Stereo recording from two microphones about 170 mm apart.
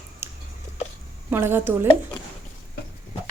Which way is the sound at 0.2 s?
15° right (ahead or behind).